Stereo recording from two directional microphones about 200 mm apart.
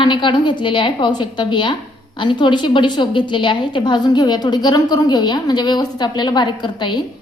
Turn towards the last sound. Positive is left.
turn(degrees=20)  # may be behind; listen again after turning